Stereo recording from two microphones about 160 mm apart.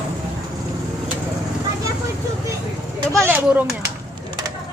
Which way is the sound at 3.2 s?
10° right (ahead or behind).